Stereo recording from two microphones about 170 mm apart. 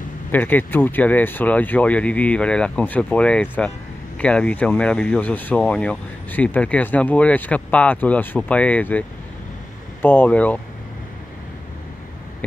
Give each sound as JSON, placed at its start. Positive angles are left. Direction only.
{"t": 0.3, "sound": "speech", "side_deg": 10}
{"t": 10.0, "sound": "speech", "side_deg": 10}